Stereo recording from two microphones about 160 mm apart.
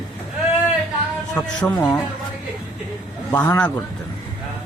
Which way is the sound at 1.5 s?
10° left (ahead or behind).